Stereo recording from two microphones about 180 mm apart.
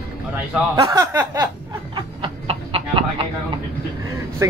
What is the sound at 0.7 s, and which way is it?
Speech, 20° right (ahead or behind).